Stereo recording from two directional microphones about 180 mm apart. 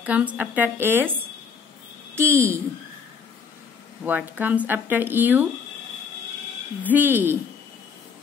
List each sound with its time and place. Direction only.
0.0 s speech: 10° right (ahead or behind)
2.1 s speech: 15° right (ahead or behind)
4.0 s speech: 10° right (ahead or behind)
6.8 s speech: 10° right (ahead or behind)